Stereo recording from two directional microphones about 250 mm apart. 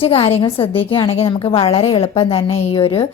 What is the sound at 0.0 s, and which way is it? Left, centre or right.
A woman's voice, left.